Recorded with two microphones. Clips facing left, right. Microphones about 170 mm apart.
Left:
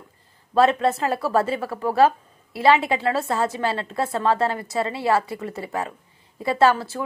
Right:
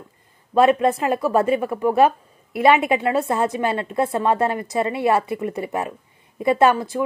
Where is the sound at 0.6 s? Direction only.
15° right (ahead or behind).